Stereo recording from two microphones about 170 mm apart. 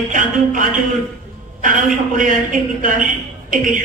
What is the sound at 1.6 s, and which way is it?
A man's voice, 50° right (ahead or behind).